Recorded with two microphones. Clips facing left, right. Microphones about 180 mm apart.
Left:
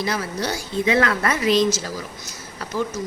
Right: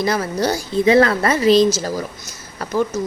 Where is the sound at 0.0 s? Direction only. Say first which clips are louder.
Right 6 dB; 45° right (ahead or behind).